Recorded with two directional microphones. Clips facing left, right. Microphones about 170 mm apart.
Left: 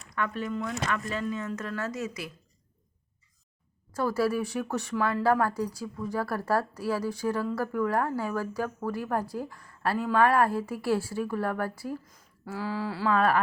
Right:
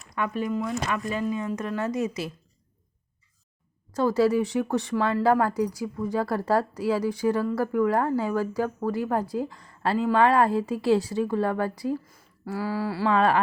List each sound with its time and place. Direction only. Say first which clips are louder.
0.2 s speech: right 4 dB; 15° right (ahead or behind)
4.0 s speech: right 5 dB; 20° right (ahead or behind)